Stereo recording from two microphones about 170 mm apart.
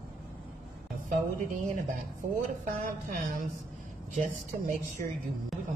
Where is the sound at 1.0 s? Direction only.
50° right (ahead or behind).